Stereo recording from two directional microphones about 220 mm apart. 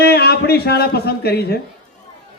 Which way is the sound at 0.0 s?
45° left (ahead or behind).